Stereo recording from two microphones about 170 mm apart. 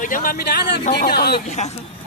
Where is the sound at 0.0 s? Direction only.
55° left (ahead or behind).